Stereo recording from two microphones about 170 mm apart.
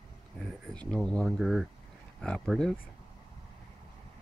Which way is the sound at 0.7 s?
5° left (ahead or behind).